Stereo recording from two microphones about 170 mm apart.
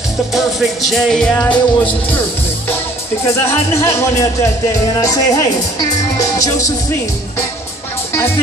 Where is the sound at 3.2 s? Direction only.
15° left (ahead or behind).